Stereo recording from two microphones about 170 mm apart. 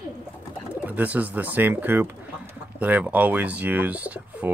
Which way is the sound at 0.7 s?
10° right (ahead or behind).